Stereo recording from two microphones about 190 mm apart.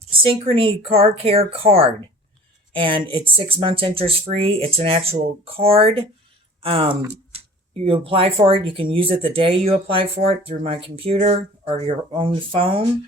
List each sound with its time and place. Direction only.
0.1 s speech: 30° right (ahead or behind)